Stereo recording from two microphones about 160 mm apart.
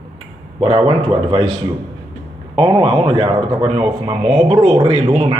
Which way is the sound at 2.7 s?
35° right (ahead or behind).